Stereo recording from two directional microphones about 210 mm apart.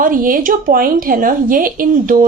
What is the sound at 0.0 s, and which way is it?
A woman's voice, 40° right (ahead or behind).